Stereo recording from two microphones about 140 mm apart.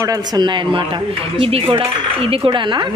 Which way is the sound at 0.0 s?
25° right (ahead or behind).